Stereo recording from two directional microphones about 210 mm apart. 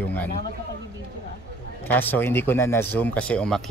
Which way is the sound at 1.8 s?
10° left (ahead or behind).